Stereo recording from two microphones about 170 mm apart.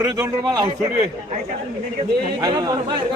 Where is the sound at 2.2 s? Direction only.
20° right (ahead or behind).